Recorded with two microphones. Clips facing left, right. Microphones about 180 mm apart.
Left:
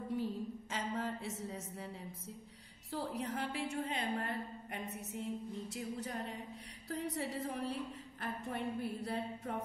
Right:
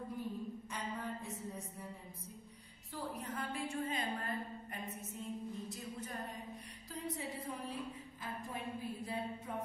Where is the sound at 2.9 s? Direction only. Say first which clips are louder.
Left 4 dB; 75° left (ahead or behind).